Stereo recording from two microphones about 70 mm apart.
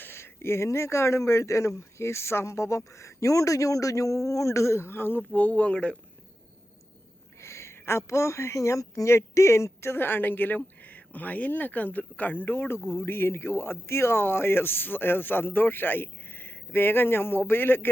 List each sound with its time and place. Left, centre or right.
0.0 s speech: left
5.3 s speech: left
7.3 s a woman's voice: left